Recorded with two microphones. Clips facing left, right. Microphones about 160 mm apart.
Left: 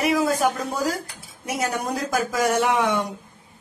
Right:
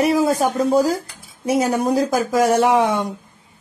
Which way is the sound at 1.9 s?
30° right (ahead or behind).